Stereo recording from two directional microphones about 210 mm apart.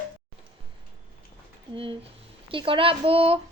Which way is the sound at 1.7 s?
25° right (ahead or behind).